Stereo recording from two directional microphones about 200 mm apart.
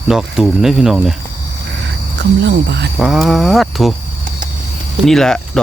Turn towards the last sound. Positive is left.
turn(degrees=5)  # may be behind; listen again after turning